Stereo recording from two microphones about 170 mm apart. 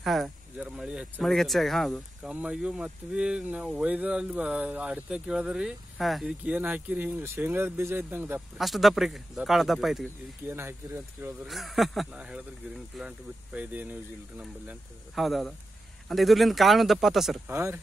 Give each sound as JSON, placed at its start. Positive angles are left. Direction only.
{"t": 0.0, "sound": "speech", "side_deg": 0}
{"t": 8.5, "sound": "speech", "side_deg": 0}
{"t": 10.4, "sound": "speech", "side_deg": -15}
{"t": 11.4, "sound": "speech", "side_deg": 0}
{"t": 17.5, "sound": "speech", "side_deg": -15}